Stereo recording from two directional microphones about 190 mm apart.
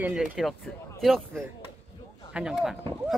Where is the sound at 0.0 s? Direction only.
5° right (ahead or behind).